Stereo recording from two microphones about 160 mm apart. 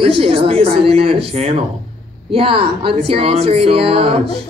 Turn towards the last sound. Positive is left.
turn(degrees=-35)  # may be behind; listen again after turning